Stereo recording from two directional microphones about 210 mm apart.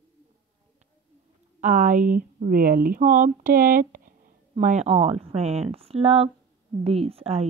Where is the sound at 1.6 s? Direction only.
35° right (ahead or behind).